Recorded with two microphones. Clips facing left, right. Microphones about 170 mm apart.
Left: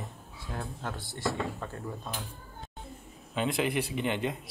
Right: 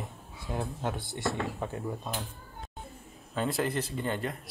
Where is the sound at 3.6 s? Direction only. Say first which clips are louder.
Left 1 dB; 15° left (ahead or behind).